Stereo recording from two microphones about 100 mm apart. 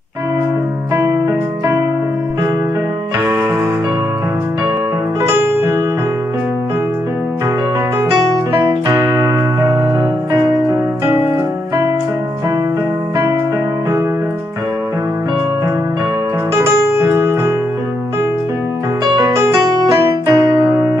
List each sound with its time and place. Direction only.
9.2 s music: 45° right (ahead or behind)
16.5 s piano: 25° right (ahead or behind)
19.1 s keyboard: 30° right (ahead or behind)